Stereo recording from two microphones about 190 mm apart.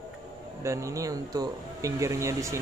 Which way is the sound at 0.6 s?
15° right (ahead or behind).